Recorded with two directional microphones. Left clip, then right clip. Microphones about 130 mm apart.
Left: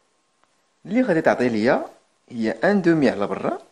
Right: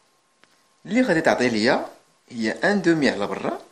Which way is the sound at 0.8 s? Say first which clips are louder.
Left 1 dB; 30° left (ahead or behind).